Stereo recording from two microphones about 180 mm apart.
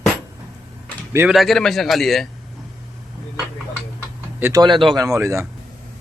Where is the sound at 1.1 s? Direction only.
10° right (ahead or behind).